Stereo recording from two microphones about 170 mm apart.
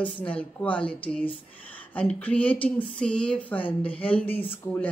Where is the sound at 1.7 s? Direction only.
10° left (ahead or behind).